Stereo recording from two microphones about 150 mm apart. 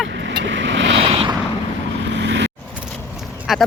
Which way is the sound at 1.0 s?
40° right (ahead or behind).